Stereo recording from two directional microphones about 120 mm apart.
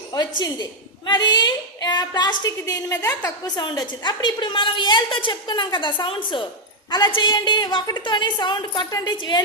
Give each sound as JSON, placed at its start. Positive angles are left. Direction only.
{"t": 0.1, "sound": "a woman's voice", "side_deg": 35}
{"t": 3.4, "sound": "a woman's voice", "side_deg": 35}